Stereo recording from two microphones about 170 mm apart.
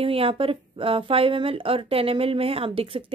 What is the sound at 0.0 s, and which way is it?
Speech, 35° right (ahead or behind).